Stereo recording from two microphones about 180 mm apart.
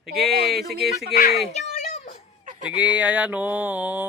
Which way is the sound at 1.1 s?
55° left (ahead or behind).